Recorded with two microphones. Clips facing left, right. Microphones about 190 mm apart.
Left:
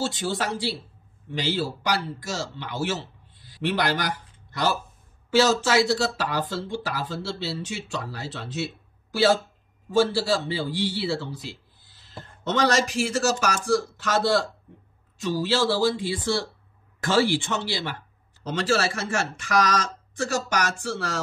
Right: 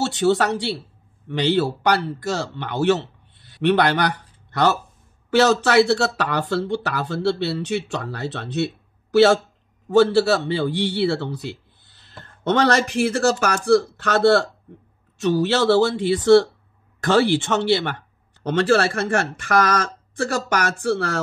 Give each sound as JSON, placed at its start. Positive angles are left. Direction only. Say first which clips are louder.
{"t": 0.0, "sound": "speech", "louder": "right 8 dB", "side_deg": -70}